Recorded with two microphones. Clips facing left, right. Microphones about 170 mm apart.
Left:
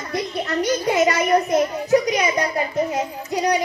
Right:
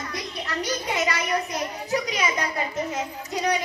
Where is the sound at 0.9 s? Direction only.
45° left (ahead or behind).